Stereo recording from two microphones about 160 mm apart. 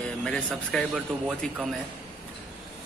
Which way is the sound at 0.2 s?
5° left (ahead or behind).